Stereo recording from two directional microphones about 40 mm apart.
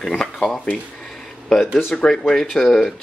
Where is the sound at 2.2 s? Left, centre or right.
Centre.